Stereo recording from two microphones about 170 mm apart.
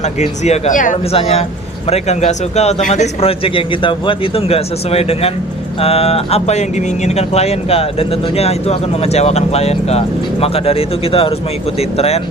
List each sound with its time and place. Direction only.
0.0 s speech: 40° left (ahead or behind)
1.1 s speech: 35° left (ahead or behind)